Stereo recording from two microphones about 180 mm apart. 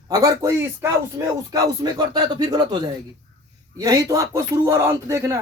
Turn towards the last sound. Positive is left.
turn(degrees=-15)  # may be behind; listen again after turning